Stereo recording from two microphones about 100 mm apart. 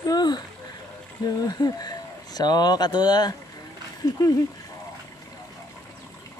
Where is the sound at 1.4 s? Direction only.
40° left (ahead or behind).